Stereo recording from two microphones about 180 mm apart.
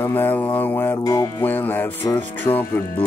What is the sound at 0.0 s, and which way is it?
Music, 10° left (ahead or behind).